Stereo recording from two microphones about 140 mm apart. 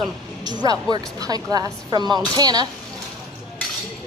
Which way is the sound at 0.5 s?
30° right (ahead or behind).